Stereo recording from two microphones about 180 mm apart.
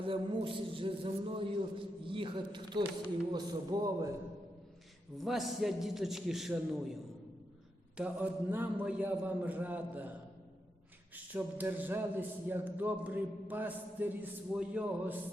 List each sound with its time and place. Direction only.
0.0 s a man's voice: 30° right (ahead or behind)
5.1 s a man's voice: centre (ahead or behind)
7.9 s a man's voice: 10° right (ahead or behind)
11.1 s a man's voice: 10° right (ahead or behind)